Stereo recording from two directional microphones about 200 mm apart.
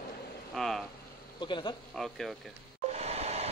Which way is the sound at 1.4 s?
25° left (ahead or behind).